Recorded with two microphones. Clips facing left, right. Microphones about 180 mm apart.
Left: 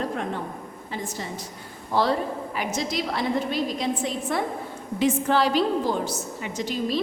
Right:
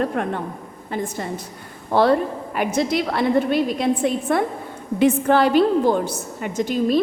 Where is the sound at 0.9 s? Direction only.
55° right (ahead or behind).